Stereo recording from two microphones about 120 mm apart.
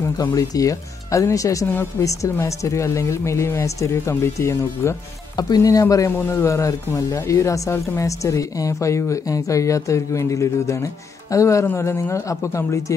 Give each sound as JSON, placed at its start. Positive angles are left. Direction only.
{"t": 0.0, "sound": "speech", "side_deg": 30}